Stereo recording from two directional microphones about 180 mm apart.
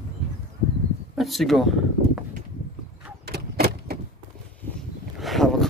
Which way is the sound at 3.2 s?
60° right (ahead or behind).